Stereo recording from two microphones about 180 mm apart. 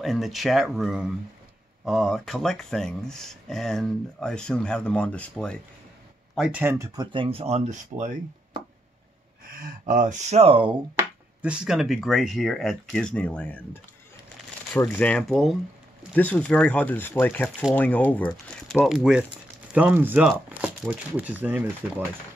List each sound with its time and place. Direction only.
0.0 s speech: centre (ahead or behind)
7.0 s speech: 30° right (ahead or behind)
9.4 s speech: 50° right (ahead or behind); by 10.8 s 30° right (ahead or behind)
11.4 s speech: 5° right (ahead or behind)
14.7 s speech: 10° left (ahead or behind)
18.9 s speech: 5° right (ahead or behind)